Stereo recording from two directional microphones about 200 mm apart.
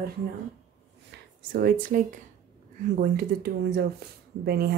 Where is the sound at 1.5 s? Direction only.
45° right (ahead or behind).